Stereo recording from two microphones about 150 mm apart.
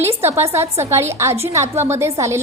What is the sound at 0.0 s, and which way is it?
A woman's voice, 15° right (ahead or behind).